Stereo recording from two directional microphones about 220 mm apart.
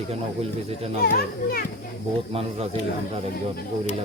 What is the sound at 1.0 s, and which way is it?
Speech, 45° left (ahead or behind).